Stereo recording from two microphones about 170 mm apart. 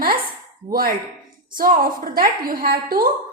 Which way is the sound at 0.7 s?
60° right (ahead or behind).